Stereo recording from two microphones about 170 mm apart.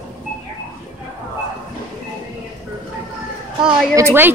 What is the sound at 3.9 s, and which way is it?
Speech, 15° right (ahead or behind).